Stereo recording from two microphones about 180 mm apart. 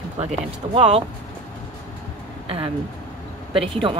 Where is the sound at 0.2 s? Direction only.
35° right (ahead or behind).